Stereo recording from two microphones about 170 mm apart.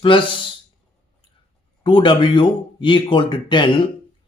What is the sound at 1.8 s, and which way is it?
Speech, 30° left (ahead or behind).